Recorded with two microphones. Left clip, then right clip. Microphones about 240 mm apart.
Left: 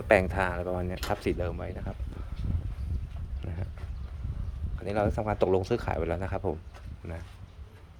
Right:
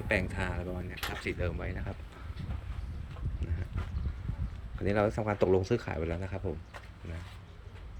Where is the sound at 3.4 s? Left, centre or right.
Centre.